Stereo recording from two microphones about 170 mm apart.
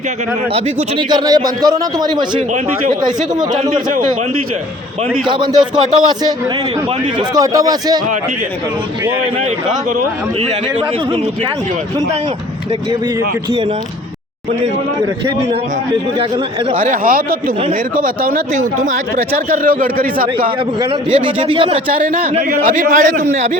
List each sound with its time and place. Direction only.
0.5 s a man's voice: 30° right (ahead or behind)
5.2 s a man's voice: 25° right (ahead or behind)
16.8 s speech: 55° right (ahead or behind)
21.2 s speech: 30° right (ahead or behind)
21.9 s a man's voice: 50° right (ahead or behind)